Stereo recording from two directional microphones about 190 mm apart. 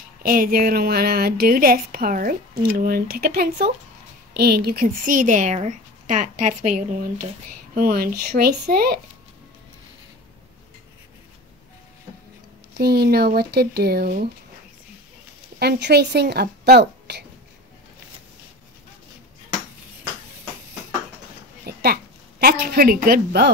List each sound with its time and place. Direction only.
0.2 s a woman's voice: 50° right (ahead or behind)
12.7 s speech: 55° right (ahead or behind)
15.6 s speech: 55° right (ahead or behind)
21.6 s a woman's voice: 55° right (ahead or behind)